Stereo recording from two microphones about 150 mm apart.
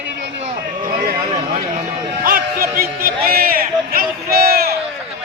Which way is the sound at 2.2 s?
70° right (ahead or behind).